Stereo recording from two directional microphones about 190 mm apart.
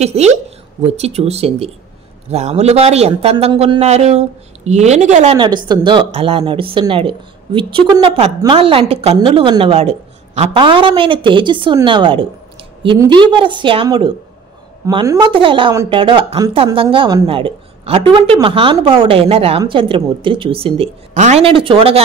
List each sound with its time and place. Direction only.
0.0 s a woman's voice: 35° right (ahead or behind)